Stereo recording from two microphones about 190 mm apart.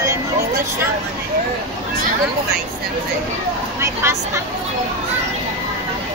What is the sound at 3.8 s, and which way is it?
Speech, 15° right (ahead or behind).